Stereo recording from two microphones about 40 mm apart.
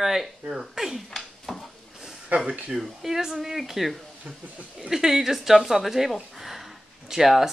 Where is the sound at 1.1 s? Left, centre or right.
Centre.